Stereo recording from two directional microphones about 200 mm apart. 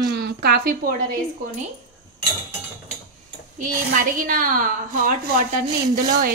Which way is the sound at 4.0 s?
45° right (ahead or behind).